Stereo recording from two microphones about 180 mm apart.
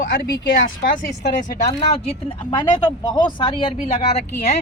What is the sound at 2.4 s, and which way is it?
Speech, 25° left (ahead or behind).